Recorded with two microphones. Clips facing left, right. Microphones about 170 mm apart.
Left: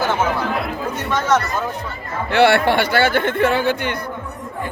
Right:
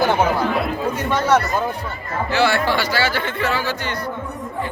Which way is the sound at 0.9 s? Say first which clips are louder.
Even; 10° right (ahead or behind).